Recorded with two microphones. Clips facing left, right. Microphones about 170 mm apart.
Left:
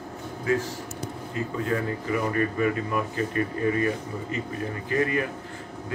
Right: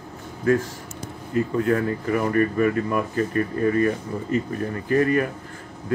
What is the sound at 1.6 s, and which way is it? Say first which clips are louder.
Speech: right 5 dB; 55° right (ahead or behind).